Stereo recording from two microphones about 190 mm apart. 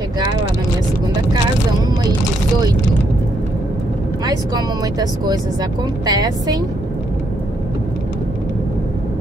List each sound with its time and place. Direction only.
4.3 s speech: 20° right (ahead or behind)